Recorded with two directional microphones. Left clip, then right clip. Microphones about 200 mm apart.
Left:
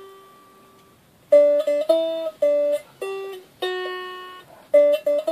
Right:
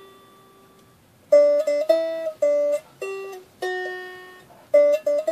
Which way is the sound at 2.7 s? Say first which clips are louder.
Left 1 dB; 15° right (ahead or behind).